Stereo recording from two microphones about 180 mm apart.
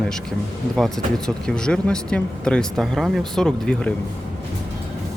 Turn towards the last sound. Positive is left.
turn(degrees=5)  # may be behind; listen again after turning